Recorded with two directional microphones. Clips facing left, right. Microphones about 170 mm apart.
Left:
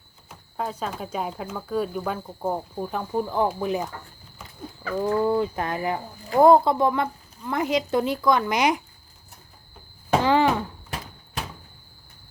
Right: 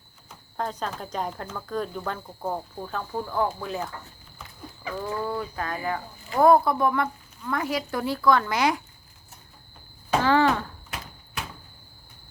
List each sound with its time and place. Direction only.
0.3 s speech: 5° left (ahead or behind)
4.9 s a woman's voice: 25° left (ahead or behind)
10.2 s a sound: 15° left (ahead or behind)